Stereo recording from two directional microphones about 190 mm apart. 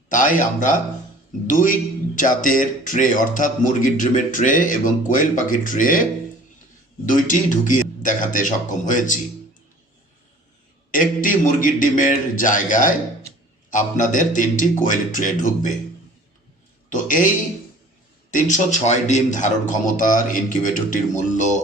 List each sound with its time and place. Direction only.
0.1 s a man's voice: 45° left (ahead or behind)
10.9 s a man's voice: 45° left (ahead or behind)
16.9 s a man's voice: 45° left (ahead or behind)
18.3 s a man's voice: 40° left (ahead or behind)